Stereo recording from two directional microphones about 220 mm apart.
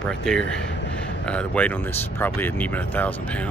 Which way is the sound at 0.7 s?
55° left (ahead or behind).